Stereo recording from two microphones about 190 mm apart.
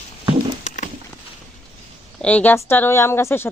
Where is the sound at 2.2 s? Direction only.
5° left (ahead or behind).